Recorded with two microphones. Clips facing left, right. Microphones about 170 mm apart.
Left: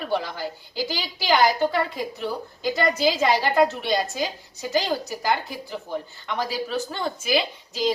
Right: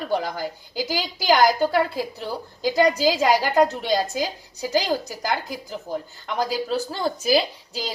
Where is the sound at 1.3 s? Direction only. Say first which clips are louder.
Right 2 dB; 35° right (ahead or behind).